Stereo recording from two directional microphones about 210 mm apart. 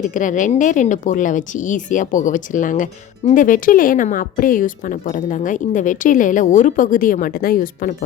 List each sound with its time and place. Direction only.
0.1 s speech: 40° left (ahead or behind)